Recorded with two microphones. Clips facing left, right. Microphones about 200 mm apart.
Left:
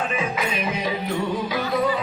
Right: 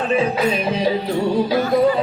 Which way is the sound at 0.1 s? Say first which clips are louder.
Right 8 dB; 35° right (ahead or behind).